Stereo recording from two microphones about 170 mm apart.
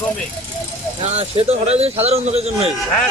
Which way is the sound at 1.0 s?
40° right (ahead or behind).